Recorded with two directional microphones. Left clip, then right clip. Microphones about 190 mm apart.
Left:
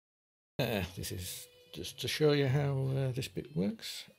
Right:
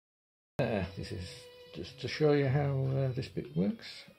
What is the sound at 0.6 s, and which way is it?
Speech, 45° left (ahead or behind).